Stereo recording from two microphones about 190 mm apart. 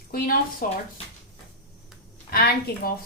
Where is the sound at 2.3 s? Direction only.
50° left (ahead or behind).